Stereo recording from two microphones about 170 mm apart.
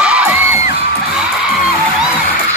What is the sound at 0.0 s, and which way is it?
Music, 5° right (ahead or behind).